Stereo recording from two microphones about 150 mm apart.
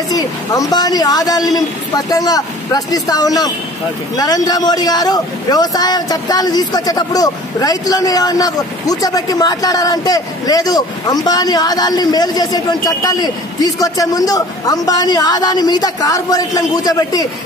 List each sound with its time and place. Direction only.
0.1 s a man's voice: 25° left (ahead or behind)